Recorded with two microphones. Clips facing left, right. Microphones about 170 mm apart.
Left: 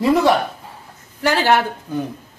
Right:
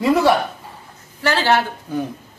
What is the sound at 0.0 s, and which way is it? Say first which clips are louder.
Speech: even; centre (ahead or behind).